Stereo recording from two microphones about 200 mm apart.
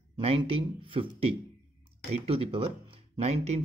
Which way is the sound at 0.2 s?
30° right (ahead or behind).